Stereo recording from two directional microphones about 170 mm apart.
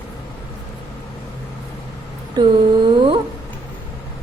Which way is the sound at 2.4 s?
25° right (ahead or behind).